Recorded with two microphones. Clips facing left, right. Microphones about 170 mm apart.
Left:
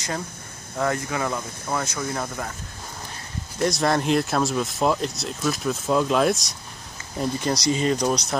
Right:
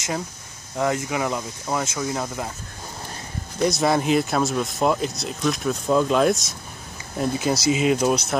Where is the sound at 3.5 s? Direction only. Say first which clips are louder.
Right 2 dB; centre (ahead or behind).